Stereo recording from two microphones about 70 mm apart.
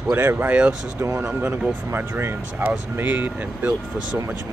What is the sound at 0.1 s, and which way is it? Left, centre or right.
Speech, right.